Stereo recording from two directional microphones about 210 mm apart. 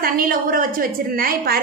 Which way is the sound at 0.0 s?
40° right (ahead or behind).